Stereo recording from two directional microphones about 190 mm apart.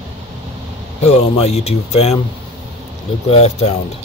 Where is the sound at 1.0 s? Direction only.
35° left (ahead or behind).